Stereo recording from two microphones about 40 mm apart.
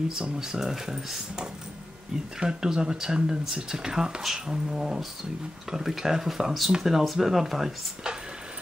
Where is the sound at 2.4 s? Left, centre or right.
Centre.